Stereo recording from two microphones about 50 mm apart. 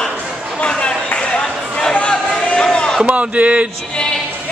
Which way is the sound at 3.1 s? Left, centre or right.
Right.